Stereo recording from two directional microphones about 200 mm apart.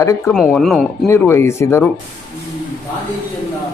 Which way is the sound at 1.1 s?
15° left (ahead or behind).